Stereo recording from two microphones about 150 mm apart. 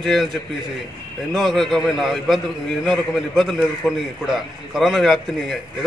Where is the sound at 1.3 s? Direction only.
Centre (ahead or behind).